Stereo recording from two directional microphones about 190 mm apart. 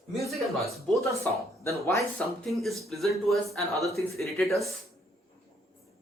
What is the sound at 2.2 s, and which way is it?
Speech, 5° left (ahead or behind).